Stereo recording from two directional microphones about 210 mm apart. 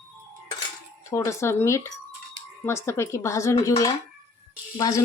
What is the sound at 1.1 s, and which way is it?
Speech, 15° left (ahead or behind).